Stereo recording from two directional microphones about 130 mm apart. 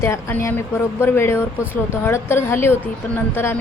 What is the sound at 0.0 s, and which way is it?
A woman's voice, 20° left (ahead or behind).